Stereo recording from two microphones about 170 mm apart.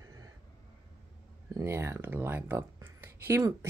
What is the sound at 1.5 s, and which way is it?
Speech, 15° right (ahead or behind).